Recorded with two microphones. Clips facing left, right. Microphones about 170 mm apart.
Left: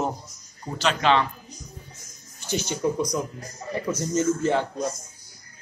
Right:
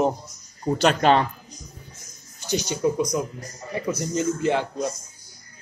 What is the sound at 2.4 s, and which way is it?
Speech, 15° right (ahead or behind).